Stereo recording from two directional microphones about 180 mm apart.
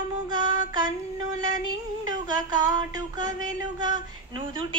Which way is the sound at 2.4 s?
20° right (ahead or behind).